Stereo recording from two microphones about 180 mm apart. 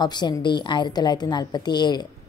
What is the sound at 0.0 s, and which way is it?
A woman's voice, 25° left (ahead or behind).